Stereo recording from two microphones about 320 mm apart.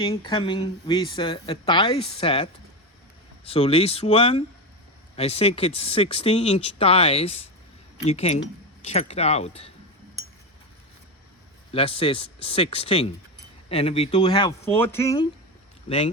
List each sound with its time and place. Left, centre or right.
0.0 s speech: centre
11.7 s speech: centre